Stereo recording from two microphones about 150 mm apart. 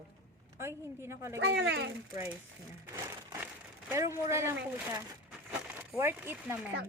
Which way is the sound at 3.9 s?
20° right (ahead or behind).